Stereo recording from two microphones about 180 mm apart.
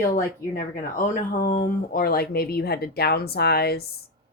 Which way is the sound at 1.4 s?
55° left (ahead or behind).